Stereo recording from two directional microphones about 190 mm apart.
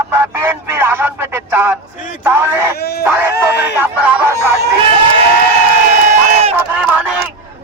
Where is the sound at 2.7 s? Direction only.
55° left (ahead or behind).